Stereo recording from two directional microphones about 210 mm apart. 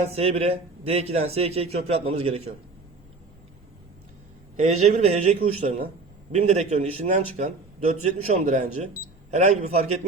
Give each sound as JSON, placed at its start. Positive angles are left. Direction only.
{"t": 0.0, "sound": "speech", "side_deg": -30}
{"t": 4.6, "sound": "a man's voice", "side_deg": -30}